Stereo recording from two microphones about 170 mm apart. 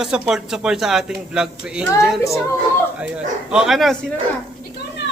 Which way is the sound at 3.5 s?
Centre (ahead or behind).